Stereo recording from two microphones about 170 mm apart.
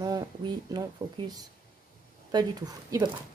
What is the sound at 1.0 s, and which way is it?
Speech, 35° right (ahead or behind).